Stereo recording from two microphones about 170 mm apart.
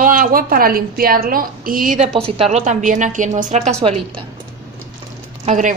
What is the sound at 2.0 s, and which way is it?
A woman's voice, 35° right (ahead or behind).